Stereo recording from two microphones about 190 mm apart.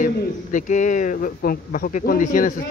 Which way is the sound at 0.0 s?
40° left (ahead or behind).